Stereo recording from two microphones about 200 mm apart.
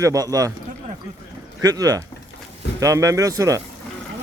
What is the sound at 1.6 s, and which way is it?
A man's voice, 15° right (ahead or behind).